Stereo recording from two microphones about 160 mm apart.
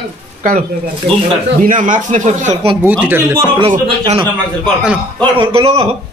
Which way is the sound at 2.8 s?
10° right (ahead or behind).